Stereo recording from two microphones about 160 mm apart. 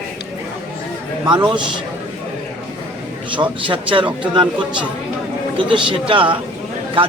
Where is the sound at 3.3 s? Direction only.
30° right (ahead or behind).